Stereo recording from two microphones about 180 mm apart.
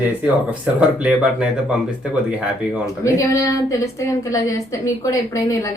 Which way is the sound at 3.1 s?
15° left (ahead or behind).